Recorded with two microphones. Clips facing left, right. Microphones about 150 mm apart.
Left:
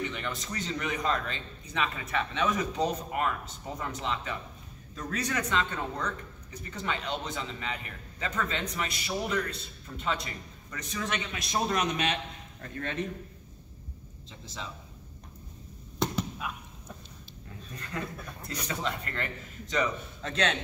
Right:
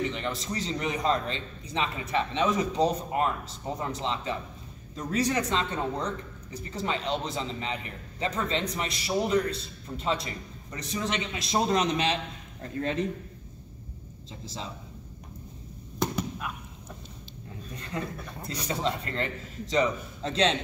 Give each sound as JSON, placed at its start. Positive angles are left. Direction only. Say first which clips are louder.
{"t": 0.0, "sound": "speech", "louder": "right 4 dB", "side_deg": -30}
{"t": 14.4, "sound": "a man's voice", "louder": "right 3 dB", "side_deg": -35}
{"t": 16.2, "sound": "chop", "louder": "right 1 dB", "side_deg": 0}
{"t": 17.7, "sound": "speech", "louder": "right 2 dB", "side_deg": -25}